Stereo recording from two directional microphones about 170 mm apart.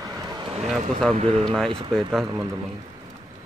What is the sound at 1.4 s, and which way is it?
Speech, 5° left (ahead or behind).